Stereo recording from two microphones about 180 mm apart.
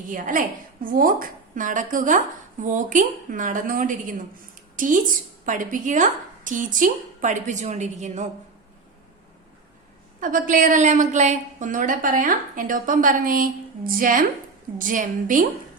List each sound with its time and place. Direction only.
0.1 s a woman's voice: 45° right (ahead or behind)
10.2 s a woman's voice: 45° right (ahead or behind)